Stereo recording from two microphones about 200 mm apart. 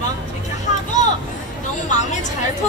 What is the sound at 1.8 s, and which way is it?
Speech, 35° left (ahead or behind).